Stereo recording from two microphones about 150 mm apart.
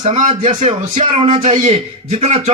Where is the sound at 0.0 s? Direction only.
50° right (ahead or behind).